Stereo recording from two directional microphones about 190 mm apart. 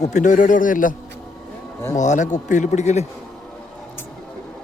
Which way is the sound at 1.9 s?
40° left (ahead or behind).